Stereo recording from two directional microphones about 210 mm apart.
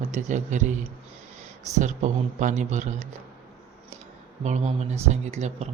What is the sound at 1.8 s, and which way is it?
Speech, 35° right (ahead or behind).